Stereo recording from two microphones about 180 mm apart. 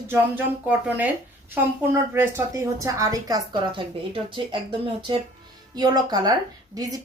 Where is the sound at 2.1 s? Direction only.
10° right (ahead or behind).